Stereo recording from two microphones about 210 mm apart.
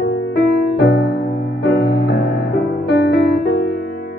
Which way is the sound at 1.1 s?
50° left (ahead or behind).